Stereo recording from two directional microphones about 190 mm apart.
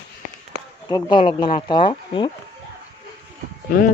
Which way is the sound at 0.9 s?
25° left (ahead or behind).